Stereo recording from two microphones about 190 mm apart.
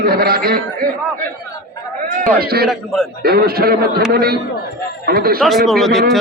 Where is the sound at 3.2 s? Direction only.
55° right (ahead or behind).